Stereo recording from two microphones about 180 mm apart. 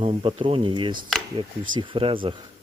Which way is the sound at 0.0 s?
30° right (ahead or behind).